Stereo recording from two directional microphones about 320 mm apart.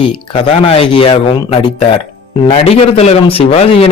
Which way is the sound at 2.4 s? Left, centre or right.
Centre.